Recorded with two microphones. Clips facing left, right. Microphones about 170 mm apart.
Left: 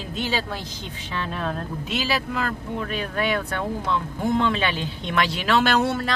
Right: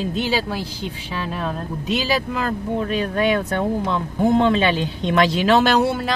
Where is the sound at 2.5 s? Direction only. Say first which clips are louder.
Right 6 dB; 30° right (ahead or behind).